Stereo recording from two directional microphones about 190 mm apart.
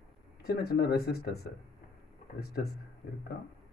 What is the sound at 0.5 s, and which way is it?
Speech, 55° left (ahead or behind).